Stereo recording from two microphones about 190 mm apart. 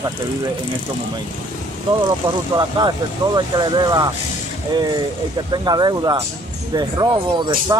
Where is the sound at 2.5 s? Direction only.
20° right (ahead or behind).